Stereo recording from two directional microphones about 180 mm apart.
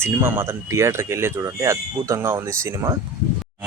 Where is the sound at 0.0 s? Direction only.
15° right (ahead or behind).